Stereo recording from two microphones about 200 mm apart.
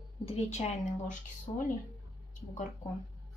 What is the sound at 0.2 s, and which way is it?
A woman's voice, 30° left (ahead or behind).